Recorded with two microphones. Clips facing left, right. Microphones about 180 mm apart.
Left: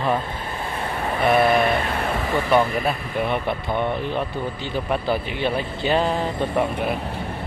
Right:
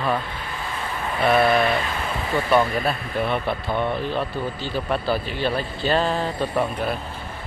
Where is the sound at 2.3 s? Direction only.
15° left (ahead or behind).